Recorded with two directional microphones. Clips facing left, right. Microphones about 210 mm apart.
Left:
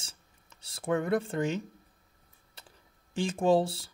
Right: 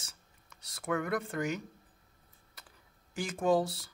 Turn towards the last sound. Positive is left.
turn(degrees=30)  # may be behind; listen again after turning